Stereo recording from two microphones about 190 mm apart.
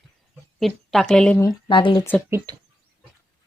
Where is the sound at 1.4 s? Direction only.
25° left (ahead or behind).